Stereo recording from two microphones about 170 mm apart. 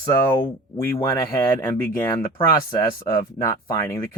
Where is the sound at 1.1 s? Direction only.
15° left (ahead or behind).